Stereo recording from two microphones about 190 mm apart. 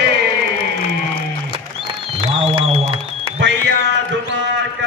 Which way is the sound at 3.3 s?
70° right (ahead or behind).